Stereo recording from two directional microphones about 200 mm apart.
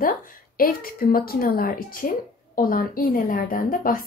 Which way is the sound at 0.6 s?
45° left (ahead or behind).